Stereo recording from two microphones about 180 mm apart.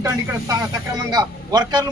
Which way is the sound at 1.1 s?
20° right (ahead or behind).